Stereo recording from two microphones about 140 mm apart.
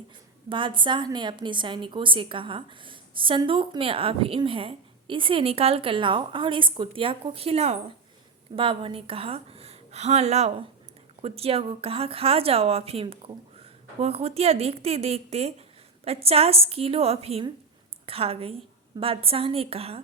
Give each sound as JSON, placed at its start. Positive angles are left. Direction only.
{"t": 0.5, "sound": "a woman's voice", "side_deg": -35}